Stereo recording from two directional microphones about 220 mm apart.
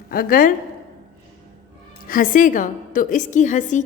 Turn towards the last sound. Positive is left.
turn(degrees=35)  # may be behind; listen again after turning